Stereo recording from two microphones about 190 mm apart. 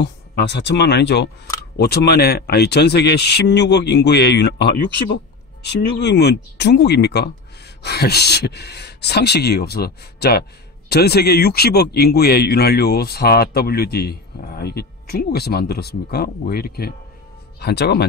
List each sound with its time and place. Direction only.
0.0 s speech: 65° left (ahead or behind)